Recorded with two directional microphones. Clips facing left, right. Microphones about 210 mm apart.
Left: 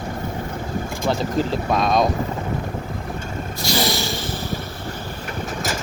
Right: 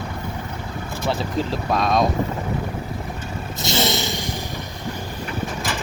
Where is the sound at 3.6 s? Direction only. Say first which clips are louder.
Even; 20° right (ahead or behind).